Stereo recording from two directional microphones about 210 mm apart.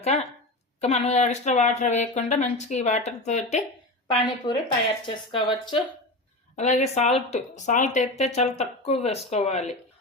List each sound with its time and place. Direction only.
0.0 s a woman's voice: 30° left (ahead or behind)
6.6 s speech: 35° left (ahead or behind)